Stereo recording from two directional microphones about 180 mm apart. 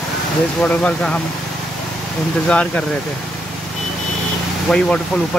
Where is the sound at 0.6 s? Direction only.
5° left (ahead or behind).